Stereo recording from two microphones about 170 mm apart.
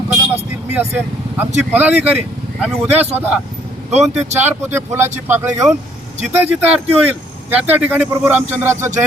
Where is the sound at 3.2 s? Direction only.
10° right (ahead or behind).